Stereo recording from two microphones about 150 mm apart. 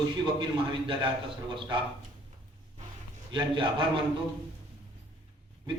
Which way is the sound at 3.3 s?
35° right (ahead or behind).